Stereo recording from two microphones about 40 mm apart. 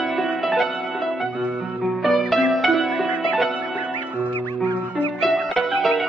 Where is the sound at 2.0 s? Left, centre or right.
Centre.